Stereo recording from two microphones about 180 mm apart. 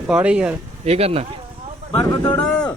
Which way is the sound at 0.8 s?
35° right (ahead or behind).